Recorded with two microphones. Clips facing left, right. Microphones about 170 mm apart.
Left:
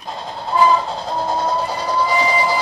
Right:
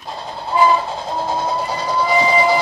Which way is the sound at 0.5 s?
10° right (ahead or behind).